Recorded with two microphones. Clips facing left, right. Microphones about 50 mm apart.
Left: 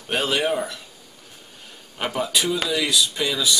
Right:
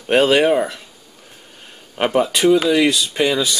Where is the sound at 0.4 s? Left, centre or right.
Right.